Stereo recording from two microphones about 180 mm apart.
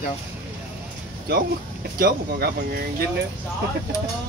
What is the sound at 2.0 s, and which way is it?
Speech, 60° right (ahead or behind).